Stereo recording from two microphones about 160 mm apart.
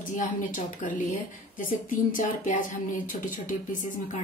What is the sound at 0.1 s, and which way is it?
A woman's voice, 55° left (ahead or behind).